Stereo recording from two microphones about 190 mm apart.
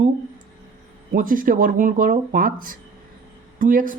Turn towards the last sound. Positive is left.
turn(degrees=-45)  # may be behind; listen again after turning